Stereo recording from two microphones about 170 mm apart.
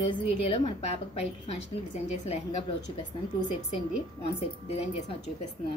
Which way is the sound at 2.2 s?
40° left (ahead or behind).